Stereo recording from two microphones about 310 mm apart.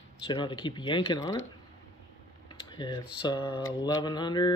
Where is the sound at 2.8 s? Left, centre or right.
Centre.